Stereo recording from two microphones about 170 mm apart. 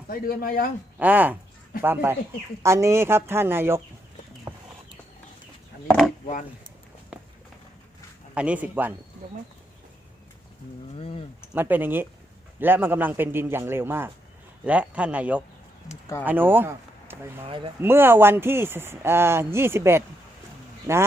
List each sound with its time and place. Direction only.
0.1 s speech: 60° left (ahead or behind)
0.9 s speech: 10° right (ahead or behind)
8.4 s speech: 10° right (ahead or behind)
10.9 s speech: 35° left (ahead or behind)
11.5 s speech: 10° right (ahead or behind)